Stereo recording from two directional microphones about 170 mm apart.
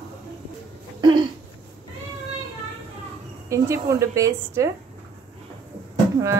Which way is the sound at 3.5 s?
15° right (ahead or behind).